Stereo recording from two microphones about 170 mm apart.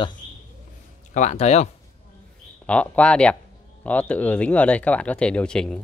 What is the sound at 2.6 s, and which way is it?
Speech, 5° left (ahead or behind).